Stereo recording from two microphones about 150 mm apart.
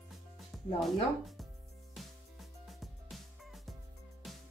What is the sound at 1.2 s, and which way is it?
Music, centre (ahead or behind).